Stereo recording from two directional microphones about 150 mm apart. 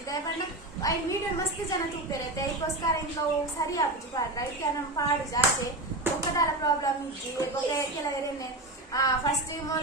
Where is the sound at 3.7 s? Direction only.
25° left (ahead or behind).